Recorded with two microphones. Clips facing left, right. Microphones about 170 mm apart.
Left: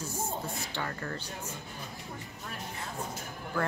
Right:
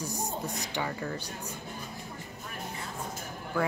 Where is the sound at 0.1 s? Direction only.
40° right (ahead or behind).